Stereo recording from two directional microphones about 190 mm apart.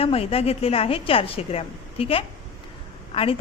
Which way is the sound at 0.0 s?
30° left (ahead or behind).